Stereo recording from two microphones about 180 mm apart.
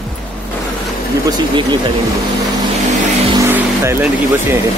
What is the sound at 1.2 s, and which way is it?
Speech, 25° right (ahead or behind).